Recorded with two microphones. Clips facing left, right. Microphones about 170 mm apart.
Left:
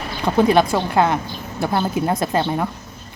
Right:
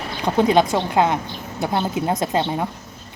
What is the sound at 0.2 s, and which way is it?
A woman's voice, 15° right (ahead or behind).